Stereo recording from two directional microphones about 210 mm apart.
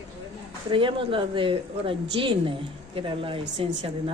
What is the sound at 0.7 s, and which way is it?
A woman's voice, 25° right (ahead or behind).